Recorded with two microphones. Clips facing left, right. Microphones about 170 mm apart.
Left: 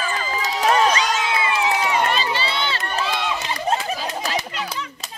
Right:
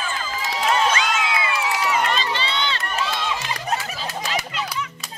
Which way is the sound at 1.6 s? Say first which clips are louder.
Left 2 dB; 20° left (ahead or behind).